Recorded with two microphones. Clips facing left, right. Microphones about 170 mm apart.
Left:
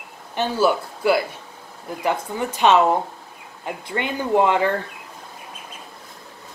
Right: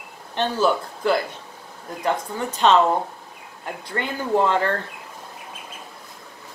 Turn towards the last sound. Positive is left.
turn(degrees=15)  # may be behind; listen again after turning